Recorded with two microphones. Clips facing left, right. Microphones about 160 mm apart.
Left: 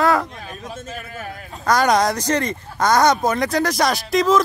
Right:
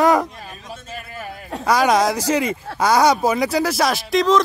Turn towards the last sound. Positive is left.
turn(degrees=0)  # may be behind; listen again after turning